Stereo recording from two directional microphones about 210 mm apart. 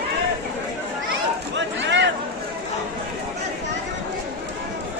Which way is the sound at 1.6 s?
60° right (ahead or behind).